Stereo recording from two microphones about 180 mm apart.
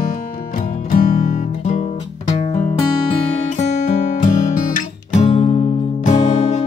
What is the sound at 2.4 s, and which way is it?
Music, 35° left (ahead or behind).